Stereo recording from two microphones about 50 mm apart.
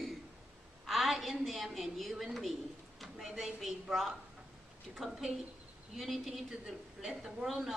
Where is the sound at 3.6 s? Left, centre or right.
Centre.